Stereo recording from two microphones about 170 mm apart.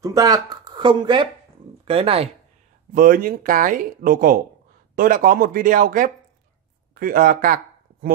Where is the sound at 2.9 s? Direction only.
55° right (ahead or behind).